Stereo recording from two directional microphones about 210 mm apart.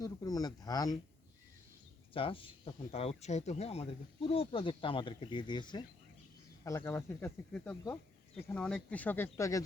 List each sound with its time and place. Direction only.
0.0 s speech: 20° left (ahead or behind)
2.1 s speech: 25° left (ahead or behind)